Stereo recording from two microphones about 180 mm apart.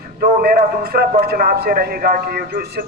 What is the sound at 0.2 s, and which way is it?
A man's voice, 55° right (ahead or behind).